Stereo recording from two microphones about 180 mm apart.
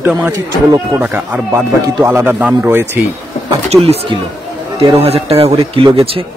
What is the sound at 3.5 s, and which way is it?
Speech, 35° right (ahead or behind).